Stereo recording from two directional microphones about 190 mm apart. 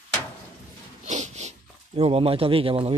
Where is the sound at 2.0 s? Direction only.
30° right (ahead or behind).